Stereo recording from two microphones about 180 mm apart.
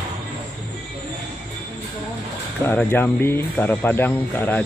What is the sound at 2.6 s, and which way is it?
Speech, 10° left (ahead or behind).